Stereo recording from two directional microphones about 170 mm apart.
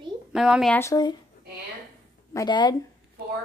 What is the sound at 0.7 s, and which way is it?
Speech, 15° left (ahead or behind).